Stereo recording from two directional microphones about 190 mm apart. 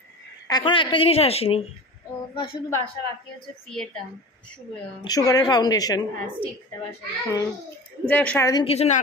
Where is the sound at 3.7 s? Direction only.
Centre (ahead or behind).